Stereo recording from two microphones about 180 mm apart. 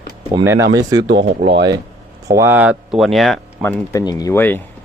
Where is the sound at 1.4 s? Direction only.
75° right (ahead or behind).